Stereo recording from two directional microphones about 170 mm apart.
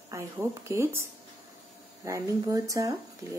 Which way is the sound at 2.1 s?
20° right (ahead or behind).